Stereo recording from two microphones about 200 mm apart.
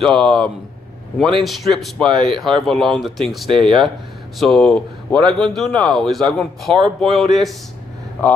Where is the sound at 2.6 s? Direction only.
Centre (ahead or behind).